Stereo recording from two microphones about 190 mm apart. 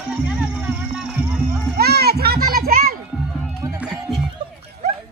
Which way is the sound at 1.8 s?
55° right (ahead or behind).